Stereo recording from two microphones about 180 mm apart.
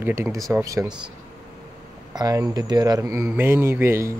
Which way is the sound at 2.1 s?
20° right (ahead or behind).